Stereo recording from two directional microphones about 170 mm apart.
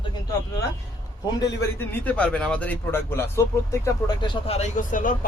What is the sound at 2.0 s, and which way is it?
Speech, 10° left (ahead or behind).